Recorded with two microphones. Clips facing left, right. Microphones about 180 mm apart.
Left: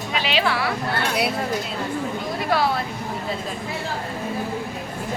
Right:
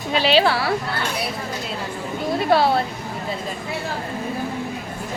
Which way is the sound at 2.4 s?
30° right (ahead or behind).